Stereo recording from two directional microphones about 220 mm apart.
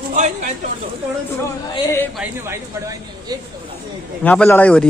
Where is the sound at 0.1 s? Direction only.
35° right (ahead or behind).